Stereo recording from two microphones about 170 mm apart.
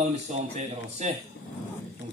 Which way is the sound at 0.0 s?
40° right (ahead or behind).